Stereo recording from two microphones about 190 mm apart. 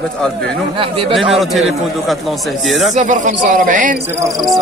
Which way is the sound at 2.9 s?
40° right (ahead or behind).